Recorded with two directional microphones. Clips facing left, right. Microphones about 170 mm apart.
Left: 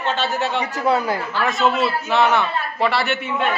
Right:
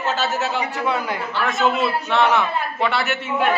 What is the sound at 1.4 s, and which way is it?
A man's voice, centre (ahead or behind).